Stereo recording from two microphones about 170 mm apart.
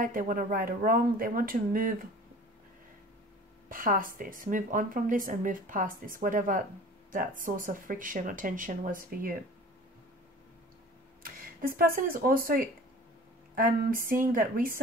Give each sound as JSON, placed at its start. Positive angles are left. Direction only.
{"t": 0.0, "sound": "speech", "side_deg": -50}
{"t": 3.6, "sound": "a woman's voice", "side_deg": -55}
{"t": 11.6, "sound": "speech", "side_deg": -55}